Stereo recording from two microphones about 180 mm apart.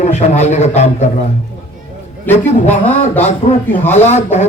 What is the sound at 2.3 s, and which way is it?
Speech, 10° left (ahead or behind).